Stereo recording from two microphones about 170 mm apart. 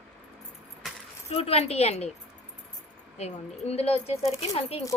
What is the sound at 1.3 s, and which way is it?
Speech, 35° left (ahead or behind).